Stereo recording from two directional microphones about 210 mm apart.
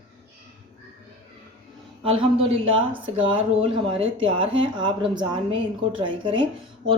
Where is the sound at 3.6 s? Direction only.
25° right (ahead or behind).